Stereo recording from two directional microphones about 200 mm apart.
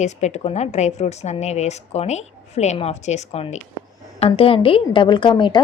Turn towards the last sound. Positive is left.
turn(degrees=25)  # may be behind; listen again after turning